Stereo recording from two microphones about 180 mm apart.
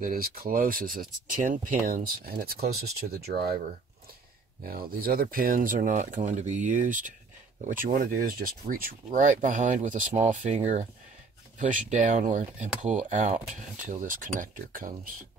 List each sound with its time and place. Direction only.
0.0 s speech: 55° right (ahead or behind)
4.6 s speech: 55° right (ahead or behind)